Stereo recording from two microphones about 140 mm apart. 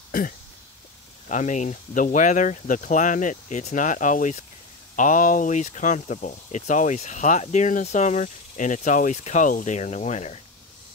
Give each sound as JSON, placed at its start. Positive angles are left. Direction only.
{"t": 1.3, "sound": "speech", "side_deg": 60}